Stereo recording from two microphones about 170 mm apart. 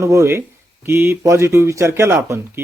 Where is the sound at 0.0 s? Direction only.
15° right (ahead or behind).